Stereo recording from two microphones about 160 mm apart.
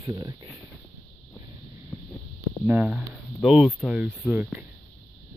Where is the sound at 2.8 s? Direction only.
Centre (ahead or behind).